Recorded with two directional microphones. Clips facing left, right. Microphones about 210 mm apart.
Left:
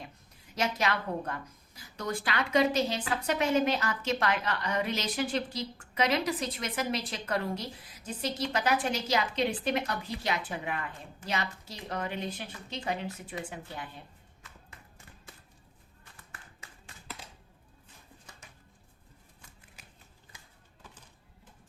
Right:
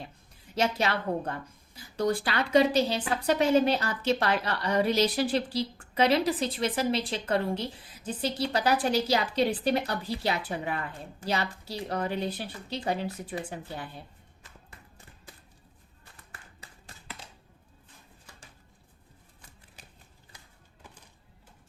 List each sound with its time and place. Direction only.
0.5 s a woman's voice: 30° right (ahead or behind)
16.6 s tap: 35° right (ahead or behind)